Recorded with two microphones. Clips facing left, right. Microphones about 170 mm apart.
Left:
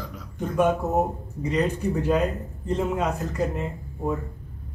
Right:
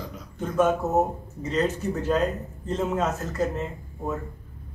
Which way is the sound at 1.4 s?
15° left (ahead or behind).